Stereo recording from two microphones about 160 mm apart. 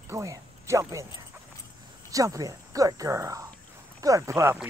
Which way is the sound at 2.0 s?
20° right (ahead or behind).